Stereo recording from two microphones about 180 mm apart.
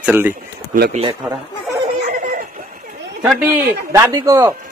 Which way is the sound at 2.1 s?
50° right (ahead or behind).